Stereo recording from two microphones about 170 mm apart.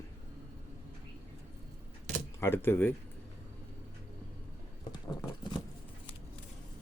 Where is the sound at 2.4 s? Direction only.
15° left (ahead or behind).